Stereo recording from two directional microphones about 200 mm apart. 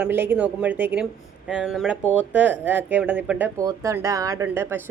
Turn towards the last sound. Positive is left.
turn(degrees=-10)  # may be behind; listen again after turning